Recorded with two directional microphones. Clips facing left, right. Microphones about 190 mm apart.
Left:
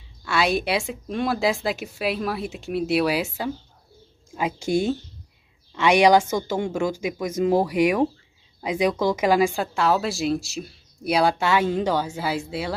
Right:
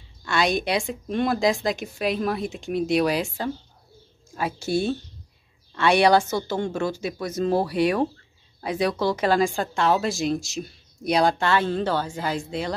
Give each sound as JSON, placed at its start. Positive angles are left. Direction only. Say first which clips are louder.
{"t": 0.2, "sound": "a woman's voice", "louder": "left 1 dB", "side_deg": 5}